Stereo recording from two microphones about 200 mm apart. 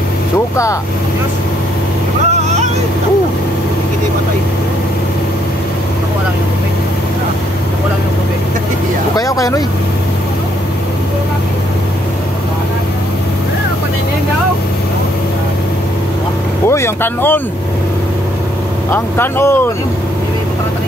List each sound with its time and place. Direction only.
9.1 s speech: 15° left (ahead or behind)
16.6 s speech: 15° left (ahead or behind)
18.9 s speech: 10° left (ahead or behind)